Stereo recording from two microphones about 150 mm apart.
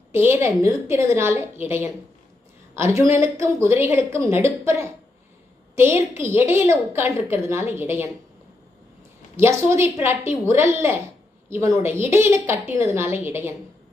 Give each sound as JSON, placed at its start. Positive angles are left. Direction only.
{"t": 0.3, "sound": "a woman's voice", "side_deg": -20}
{"t": 9.4, "sound": "a woman's voice", "side_deg": -15}